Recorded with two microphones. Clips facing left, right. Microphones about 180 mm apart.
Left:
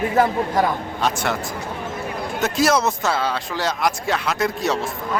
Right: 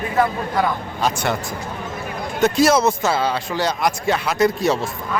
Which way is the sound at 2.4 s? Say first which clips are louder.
Right 4 dB; centre (ahead or behind).